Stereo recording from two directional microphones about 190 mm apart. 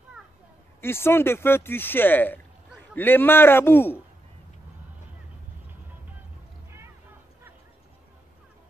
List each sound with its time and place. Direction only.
0.7 s speech: 10° left (ahead or behind)